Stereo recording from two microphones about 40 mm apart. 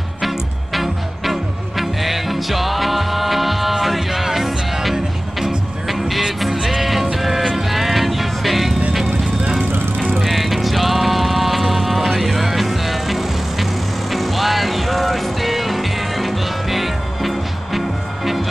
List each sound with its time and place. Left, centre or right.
0.7 s music: centre